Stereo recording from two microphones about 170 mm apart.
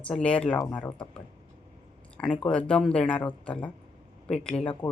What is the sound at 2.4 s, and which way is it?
A woman's voice, 5° left (ahead or behind).